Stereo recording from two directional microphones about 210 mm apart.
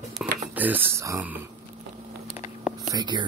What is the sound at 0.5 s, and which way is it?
Speech, 10° right (ahead or behind).